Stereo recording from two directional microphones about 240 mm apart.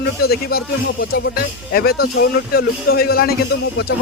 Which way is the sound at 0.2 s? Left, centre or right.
Left.